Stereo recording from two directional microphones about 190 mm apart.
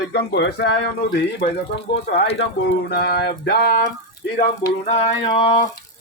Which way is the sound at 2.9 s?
55° left (ahead or behind).